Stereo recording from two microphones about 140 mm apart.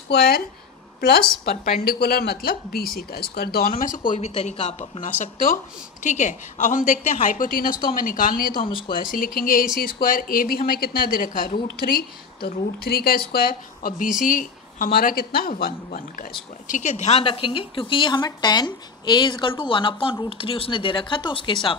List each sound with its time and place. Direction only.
1.6 s a woman's voice: 90° left
4.3 s a woman's voice: 50° left (ahead or behind)
5.2 s a woman's voice: 75° left (ahead or behind)
6.0 s a woman's voice: 60° left (ahead or behind); by 7.8 s 90° left
7.9 s a woman's voice: 75° left (ahead or behind)
8.5 s a woman's voice: 35° left (ahead or behind)
8.9 s a woman's voice: 85° left
14.2 s a woman's voice: 75° left (ahead or behind)
16.6 s a woman's voice: 65° left (ahead or behind); by 21.7 s 35° left (ahead or behind)